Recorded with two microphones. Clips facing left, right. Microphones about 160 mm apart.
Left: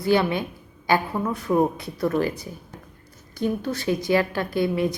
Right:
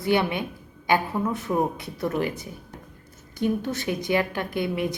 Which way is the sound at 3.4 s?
20° right (ahead or behind).